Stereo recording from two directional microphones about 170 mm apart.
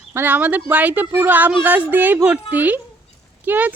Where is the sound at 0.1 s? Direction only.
10° right (ahead or behind).